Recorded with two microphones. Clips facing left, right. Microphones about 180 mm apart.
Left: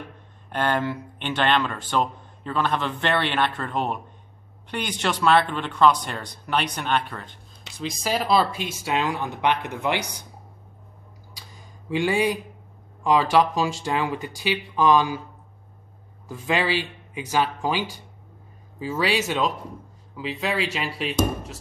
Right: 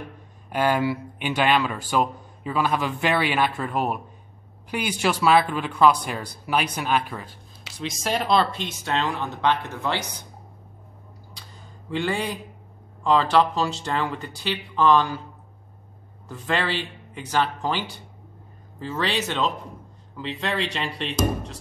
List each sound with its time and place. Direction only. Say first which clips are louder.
0.5 s speech: right 2 dB; 10° right (ahead or behind); by 10.2 s 15° left (ahead or behind)
11.9 s speech: left 4 dB; 10° left (ahead or behind)
16.3 s speech: left 2 dB; 10° left (ahead or behind)